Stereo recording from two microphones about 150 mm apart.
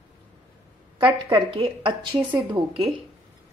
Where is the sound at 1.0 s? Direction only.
35° right (ahead or behind).